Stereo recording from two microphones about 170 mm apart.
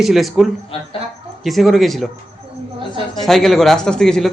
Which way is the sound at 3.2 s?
Centre (ahead or behind).